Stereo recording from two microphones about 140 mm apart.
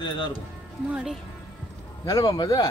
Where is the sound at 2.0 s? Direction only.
25° left (ahead or behind).